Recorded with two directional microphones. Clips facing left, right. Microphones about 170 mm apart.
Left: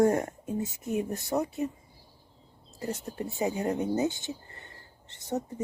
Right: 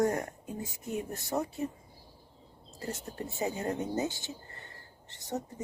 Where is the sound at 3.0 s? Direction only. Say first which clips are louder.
Left 3 dB; 20° left (ahead or behind).